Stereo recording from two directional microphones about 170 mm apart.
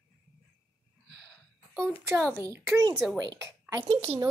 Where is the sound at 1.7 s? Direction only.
5° left (ahead or behind).